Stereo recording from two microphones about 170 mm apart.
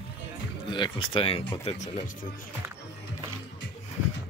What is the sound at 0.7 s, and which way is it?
Speech, 30° left (ahead or behind).